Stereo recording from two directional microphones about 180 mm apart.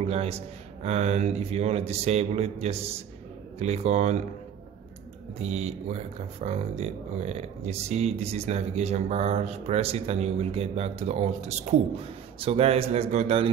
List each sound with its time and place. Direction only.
0.0 s speech: 35° right (ahead or behind)
5.4 s speech: 35° right (ahead or behind)